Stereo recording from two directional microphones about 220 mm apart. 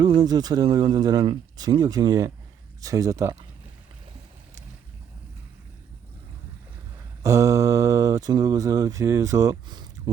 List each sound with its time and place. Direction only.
0.0 s speech: 20° right (ahead or behind)
7.2 s speech: 15° right (ahead or behind)